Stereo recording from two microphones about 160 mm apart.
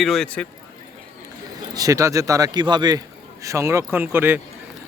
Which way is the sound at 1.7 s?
20° right (ahead or behind).